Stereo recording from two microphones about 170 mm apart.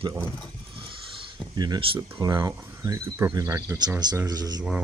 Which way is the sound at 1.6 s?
30° right (ahead or behind).